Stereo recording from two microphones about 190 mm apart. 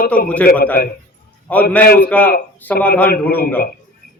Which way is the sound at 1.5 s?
10° left (ahead or behind).